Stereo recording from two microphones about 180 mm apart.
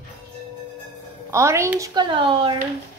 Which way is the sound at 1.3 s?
15° right (ahead or behind).